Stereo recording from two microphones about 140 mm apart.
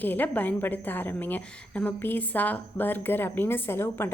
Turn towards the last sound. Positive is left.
turn(degrees=15)  # may be behind; listen again after turning